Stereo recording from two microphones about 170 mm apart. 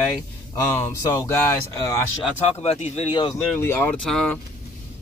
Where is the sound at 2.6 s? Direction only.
40° left (ahead or behind).